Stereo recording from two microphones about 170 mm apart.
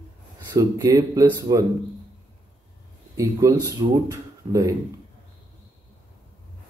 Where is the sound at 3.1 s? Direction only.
20° right (ahead or behind).